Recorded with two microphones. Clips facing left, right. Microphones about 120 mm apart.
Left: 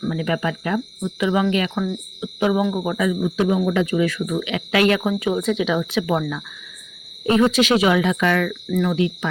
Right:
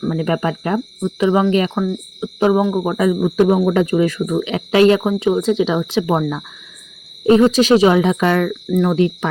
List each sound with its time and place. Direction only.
0.0 s speech: 40° right (ahead or behind)
3.2 s speech: 55° right (ahead or behind)